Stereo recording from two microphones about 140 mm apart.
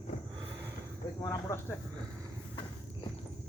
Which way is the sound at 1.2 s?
20° left (ahead or behind).